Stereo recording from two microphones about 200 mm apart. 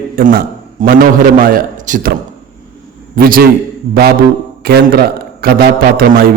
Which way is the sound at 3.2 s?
45° right (ahead or behind).